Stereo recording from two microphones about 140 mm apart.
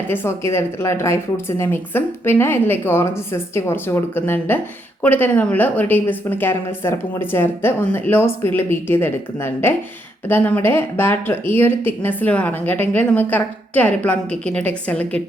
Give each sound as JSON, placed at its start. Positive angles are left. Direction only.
{"t": 0.1, "sound": "a woman's voice", "side_deg": 15}